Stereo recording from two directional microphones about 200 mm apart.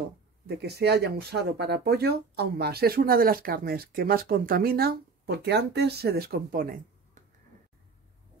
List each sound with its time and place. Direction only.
0.5 s speech: 55° right (ahead or behind)